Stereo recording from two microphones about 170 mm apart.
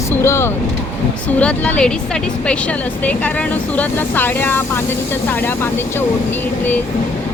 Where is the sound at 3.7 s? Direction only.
10° left (ahead or behind).